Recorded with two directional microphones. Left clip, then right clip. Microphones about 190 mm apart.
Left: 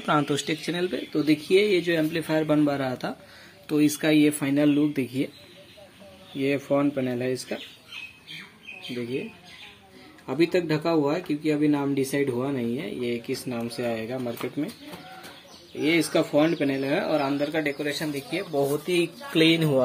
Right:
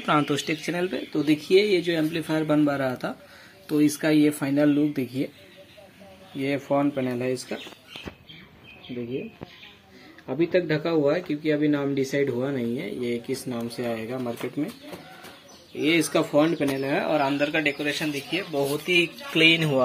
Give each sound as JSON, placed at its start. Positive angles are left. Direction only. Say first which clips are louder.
{"t": 0.0, "sound": "speech", "louder": "right 1 dB", "side_deg": 0}
{"t": 1.7, "sound": "speech", "louder": "even", "side_deg": 15}
{"t": 6.3, "sound": "speech", "louder": "even", "side_deg": 5}
{"t": 10.2, "sound": "speech", "louder": "even", "side_deg": 20}
{"t": 15.8, "sound": "speech", "louder": "right 1 dB", "side_deg": 0}